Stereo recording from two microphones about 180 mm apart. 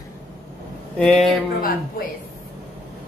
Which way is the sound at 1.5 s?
50° left (ahead or behind).